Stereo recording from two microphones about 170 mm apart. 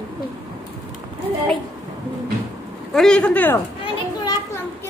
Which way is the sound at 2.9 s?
5° left (ahead or behind).